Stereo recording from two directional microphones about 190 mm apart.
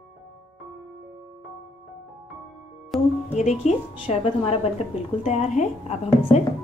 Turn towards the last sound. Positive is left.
turn(degrees=35)  # may be behind; listen again after turning